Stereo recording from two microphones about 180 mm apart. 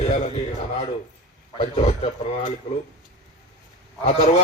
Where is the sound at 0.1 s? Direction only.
35° left (ahead or behind).